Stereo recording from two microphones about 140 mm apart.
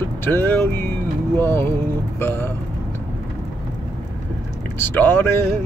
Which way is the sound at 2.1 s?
15° left (ahead or behind).